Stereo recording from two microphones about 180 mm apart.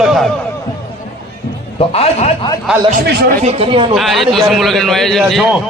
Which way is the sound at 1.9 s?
35° left (ahead or behind).